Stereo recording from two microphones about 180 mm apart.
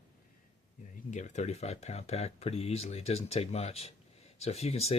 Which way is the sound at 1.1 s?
40° left (ahead or behind).